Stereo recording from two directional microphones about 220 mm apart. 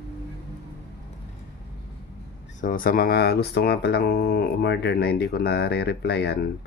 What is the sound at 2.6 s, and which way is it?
Speech, 40° left (ahead or behind).